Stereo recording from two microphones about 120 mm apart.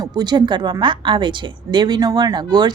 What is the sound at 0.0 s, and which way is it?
A woman's voice, 35° right (ahead or behind).